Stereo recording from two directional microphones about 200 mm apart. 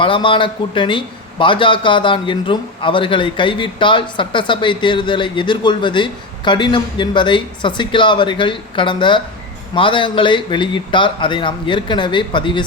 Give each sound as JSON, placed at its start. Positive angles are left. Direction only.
{"t": 0.0, "sound": "a man's voice", "side_deg": 25}